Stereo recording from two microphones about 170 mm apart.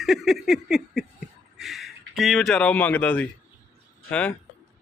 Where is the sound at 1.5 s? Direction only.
Centre (ahead or behind).